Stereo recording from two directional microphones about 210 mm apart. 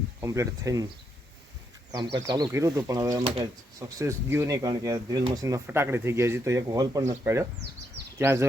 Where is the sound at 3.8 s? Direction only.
15° right (ahead or behind).